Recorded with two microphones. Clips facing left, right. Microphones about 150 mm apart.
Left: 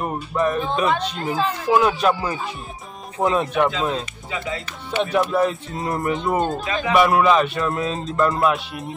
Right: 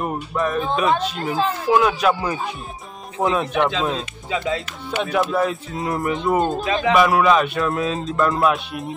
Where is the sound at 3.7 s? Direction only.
20° right (ahead or behind).